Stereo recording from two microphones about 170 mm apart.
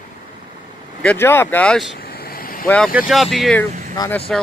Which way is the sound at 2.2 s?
60° left (ahead or behind).